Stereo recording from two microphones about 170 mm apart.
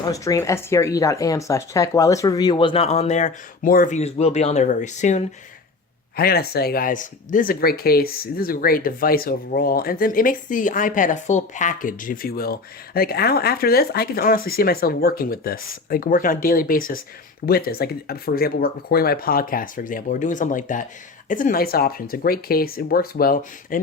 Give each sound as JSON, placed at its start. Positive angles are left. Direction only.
{"t": 0.0, "sound": "speech", "side_deg": 20}
{"t": 6.1, "sound": "speech", "side_deg": 65}